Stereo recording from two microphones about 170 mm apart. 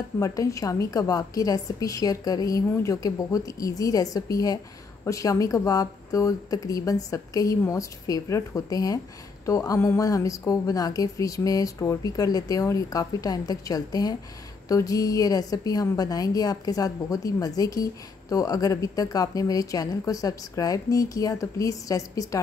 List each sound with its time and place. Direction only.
0.2 s a woman's voice: 20° left (ahead or behind)